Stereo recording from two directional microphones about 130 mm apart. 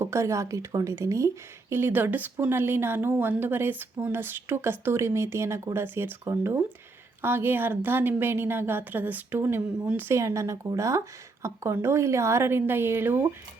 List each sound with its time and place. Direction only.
0.0 s a woman's voice: 20° right (ahead or behind)
10.1 s speech: 25° right (ahead or behind)